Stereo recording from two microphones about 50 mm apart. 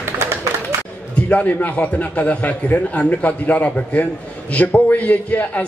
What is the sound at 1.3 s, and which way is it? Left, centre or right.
A man's voice, left.